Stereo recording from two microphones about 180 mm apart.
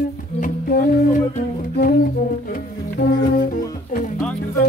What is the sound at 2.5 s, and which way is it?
Music, 55° left (ahead or behind).